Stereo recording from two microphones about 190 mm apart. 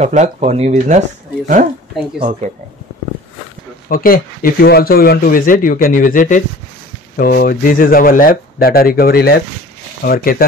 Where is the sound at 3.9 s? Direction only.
50° left (ahead or behind).